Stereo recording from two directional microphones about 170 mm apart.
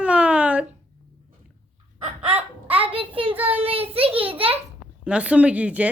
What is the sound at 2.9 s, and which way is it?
A child's voice, 30° right (ahead or behind).